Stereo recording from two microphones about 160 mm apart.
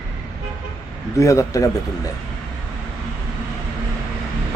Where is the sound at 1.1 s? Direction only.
20° left (ahead or behind).